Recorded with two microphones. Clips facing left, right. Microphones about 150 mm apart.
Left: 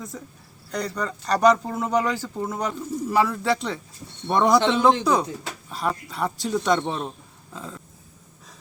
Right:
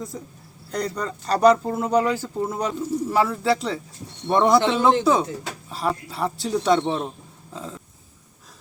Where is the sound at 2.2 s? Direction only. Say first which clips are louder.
Right 2 dB; 5° right (ahead or behind).